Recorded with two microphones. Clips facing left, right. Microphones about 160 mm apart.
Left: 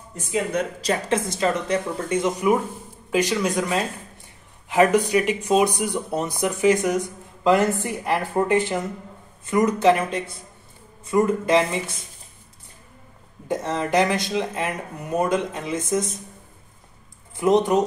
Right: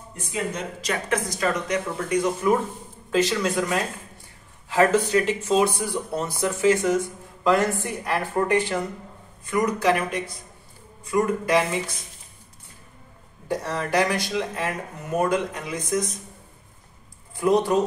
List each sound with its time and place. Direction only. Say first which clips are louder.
0.7 s speech: left 3 dB; 30° left (ahead or behind)
3.1 s speech: left 1 dB; 15° left (ahead or behind)
13.5 s speech: left 2 dB; 20° left (ahead or behind)
17.4 s speech: left 2 dB; 20° left (ahead or behind)